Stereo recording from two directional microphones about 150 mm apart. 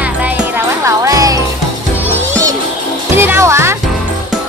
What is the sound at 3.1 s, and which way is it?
Music, 15° right (ahead or behind).